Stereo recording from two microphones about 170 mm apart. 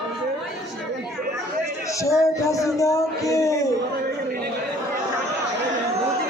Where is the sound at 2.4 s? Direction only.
20° left (ahead or behind).